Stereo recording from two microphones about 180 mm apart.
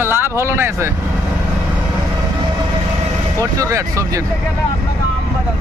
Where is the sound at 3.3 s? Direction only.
20° right (ahead or behind).